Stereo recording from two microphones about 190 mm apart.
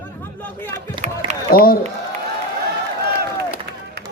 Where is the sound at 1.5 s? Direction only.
50° left (ahead or behind).